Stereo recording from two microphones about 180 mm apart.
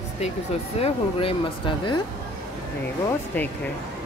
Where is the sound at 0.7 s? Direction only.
35° left (ahead or behind).